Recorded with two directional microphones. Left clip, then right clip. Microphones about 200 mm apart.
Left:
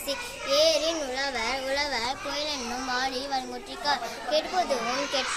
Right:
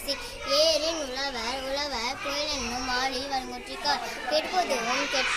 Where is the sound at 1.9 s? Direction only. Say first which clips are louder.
Left 1 dB; centre (ahead or behind).